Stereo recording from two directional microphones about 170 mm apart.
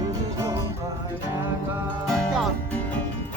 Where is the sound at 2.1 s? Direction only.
Centre (ahead or behind).